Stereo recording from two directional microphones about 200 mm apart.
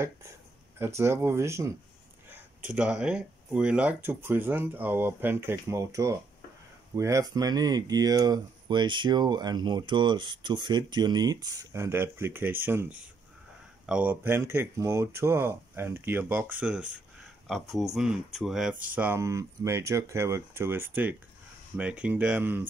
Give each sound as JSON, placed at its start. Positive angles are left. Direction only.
{"t": 0.7, "sound": "speech", "side_deg": -15}